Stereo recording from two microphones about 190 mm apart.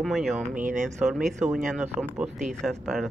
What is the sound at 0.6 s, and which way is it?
Speech, 45° right (ahead or behind).